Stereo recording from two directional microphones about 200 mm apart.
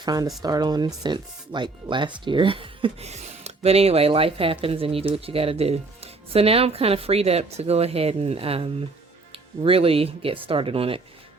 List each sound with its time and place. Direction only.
0.0 s speech: 20° right (ahead or behind)